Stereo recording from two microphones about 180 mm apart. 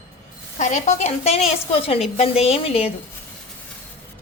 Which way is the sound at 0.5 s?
40° left (ahead or behind).